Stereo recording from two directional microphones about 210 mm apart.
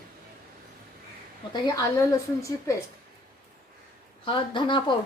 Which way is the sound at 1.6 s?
15° left (ahead or behind).